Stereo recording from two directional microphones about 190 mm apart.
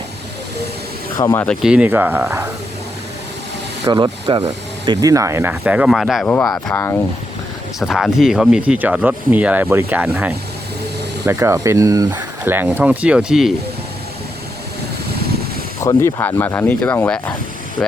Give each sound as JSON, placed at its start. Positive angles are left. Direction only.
{"t": 1.1, "sound": "speech", "side_deg": 15}
{"t": 1.6, "sound": "speech", "side_deg": -5}
{"t": 3.8, "sound": "speech", "side_deg": -20}
{"t": 4.9, "sound": "speech", "side_deg": -15}
{"t": 6.7, "sound": "speech", "side_deg": 15}
{"t": 7.8, "sound": "speech", "side_deg": 0}
{"t": 15.8, "sound": "speech", "side_deg": 15}